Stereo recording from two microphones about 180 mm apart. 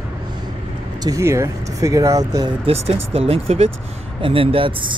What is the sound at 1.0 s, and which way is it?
Speech, 15° right (ahead or behind).